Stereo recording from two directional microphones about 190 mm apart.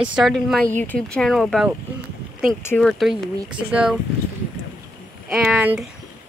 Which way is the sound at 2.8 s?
Centre (ahead or behind).